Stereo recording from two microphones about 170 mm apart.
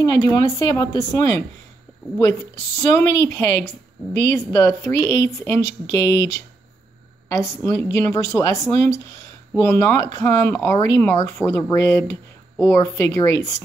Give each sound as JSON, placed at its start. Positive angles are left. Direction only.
{"t": 0.0, "sound": "speech", "side_deg": 20}
{"t": 7.3, "sound": "speech", "side_deg": 15}